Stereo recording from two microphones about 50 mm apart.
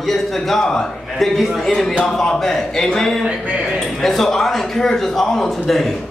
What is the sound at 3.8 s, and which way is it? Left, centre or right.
A man's voice, centre.